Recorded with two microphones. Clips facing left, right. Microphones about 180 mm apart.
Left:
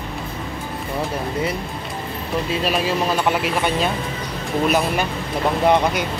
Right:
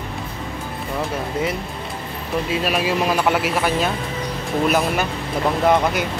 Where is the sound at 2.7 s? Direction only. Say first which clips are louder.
Even; 5° right (ahead or behind).